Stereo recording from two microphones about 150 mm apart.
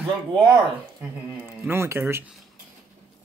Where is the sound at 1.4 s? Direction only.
15° right (ahead or behind).